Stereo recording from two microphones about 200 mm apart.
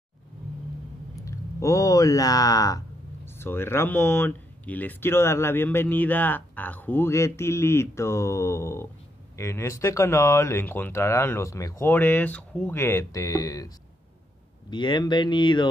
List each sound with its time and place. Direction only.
1.1 s speech: 15° left (ahead or behind)
14.7 s speech: 25° left (ahead or behind)